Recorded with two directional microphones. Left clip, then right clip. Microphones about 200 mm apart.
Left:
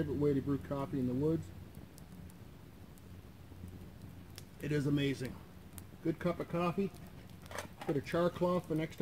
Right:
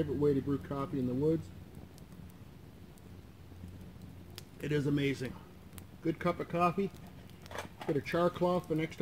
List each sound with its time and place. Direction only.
0.2 s speech: centre (ahead or behind)
4.6 s speech: centre (ahead or behind)